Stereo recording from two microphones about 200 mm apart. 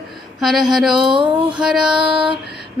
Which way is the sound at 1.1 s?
25° right (ahead or behind).